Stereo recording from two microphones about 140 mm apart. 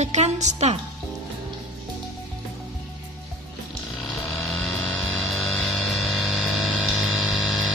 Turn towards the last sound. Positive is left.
turn(degrees=0)  # may be behind; listen again after turning